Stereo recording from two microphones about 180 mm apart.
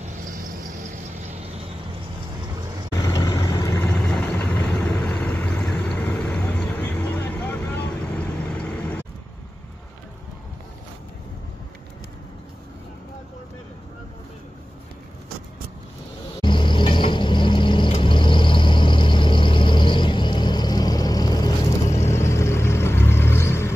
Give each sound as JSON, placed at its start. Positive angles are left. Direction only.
{"t": 3.0, "sound": "vehicle", "side_deg": 20}
{"t": 3.9, "sound": "vehicle", "side_deg": 5}
{"t": 16.3, "sound": "vehicle", "side_deg": 25}